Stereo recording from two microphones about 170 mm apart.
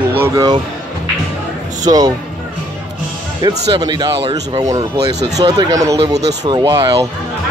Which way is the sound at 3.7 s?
25° right (ahead or behind).